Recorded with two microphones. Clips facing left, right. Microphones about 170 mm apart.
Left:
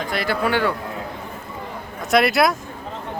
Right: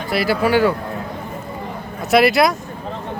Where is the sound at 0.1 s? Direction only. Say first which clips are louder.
Right 6 dB; 5° right (ahead or behind).